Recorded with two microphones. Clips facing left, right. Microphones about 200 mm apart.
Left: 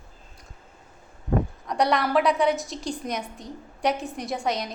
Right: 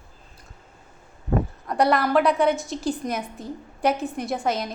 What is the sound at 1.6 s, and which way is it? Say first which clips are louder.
A woman's voice: right 4 dB; centre (ahead or behind).